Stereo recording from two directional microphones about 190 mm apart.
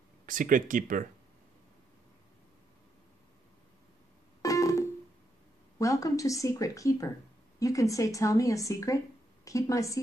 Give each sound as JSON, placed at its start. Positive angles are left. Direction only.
{"t": 0.3, "sound": "speech", "side_deg": -45}
{"t": 4.4, "sound": "keyboard", "side_deg": 15}
{"t": 5.8, "sound": "speech", "side_deg": 15}